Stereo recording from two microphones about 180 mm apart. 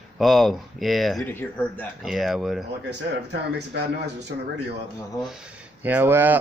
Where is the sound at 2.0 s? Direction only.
Centre (ahead or behind).